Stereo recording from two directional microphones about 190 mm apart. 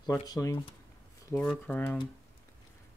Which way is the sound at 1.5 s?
10° left (ahead or behind).